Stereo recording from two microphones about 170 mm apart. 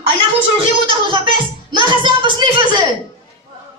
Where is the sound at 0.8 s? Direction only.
30° right (ahead or behind).